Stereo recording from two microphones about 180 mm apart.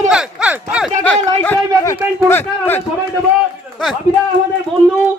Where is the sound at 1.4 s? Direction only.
15° left (ahead or behind).